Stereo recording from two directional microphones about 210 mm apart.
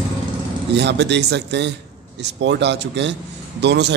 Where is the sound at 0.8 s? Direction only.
55° right (ahead or behind).